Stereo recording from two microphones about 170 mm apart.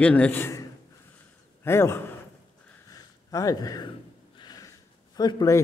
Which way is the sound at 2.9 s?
20° left (ahead or behind).